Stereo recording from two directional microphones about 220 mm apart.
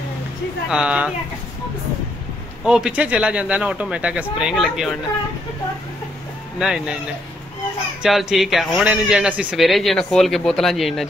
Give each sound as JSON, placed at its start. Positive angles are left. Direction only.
{"t": 0.7, "sound": "a man's voice", "side_deg": -5}
{"t": 2.6, "sound": "a man's voice", "side_deg": -5}
{"t": 6.6, "sound": "a man's voice", "side_deg": -5}
{"t": 8.0, "sound": "a man's voice", "side_deg": 0}